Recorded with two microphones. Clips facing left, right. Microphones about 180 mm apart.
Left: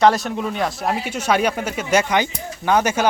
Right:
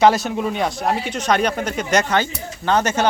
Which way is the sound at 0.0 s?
Centre (ahead or behind).